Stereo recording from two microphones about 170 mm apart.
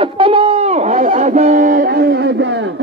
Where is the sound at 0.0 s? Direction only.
30° right (ahead or behind); by 2.3 s 70° right (ahead or behind).